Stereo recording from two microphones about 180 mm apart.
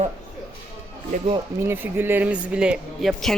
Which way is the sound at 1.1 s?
35° right (ahead or behind).